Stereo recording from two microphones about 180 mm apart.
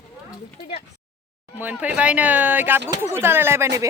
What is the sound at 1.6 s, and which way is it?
Speech, 10° right (ahead or behind).